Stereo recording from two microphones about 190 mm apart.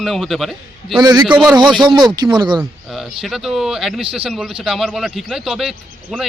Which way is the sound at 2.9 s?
Centre (ahead or behind).